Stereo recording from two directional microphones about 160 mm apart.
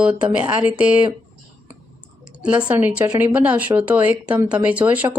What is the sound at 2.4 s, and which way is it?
Speech, 5° right (ahead or behind).